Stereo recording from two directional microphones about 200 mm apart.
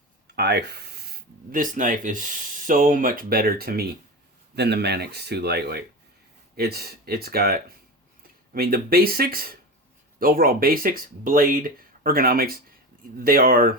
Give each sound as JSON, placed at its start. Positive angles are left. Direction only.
{"t": 0.3, "sound": "speech", "side_deg": -55}